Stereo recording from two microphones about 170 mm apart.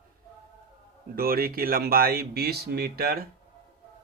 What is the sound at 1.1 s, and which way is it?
Speech, 60° right (ahead or behind).